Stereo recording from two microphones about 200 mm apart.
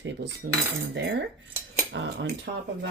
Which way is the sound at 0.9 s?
55° right (ahead or behind).